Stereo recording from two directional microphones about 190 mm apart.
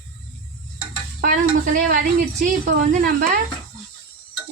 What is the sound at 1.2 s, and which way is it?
Sizzle, 45° right (ahead or behind).